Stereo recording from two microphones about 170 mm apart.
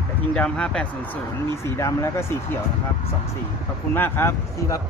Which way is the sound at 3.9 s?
15° left (ahead or behind).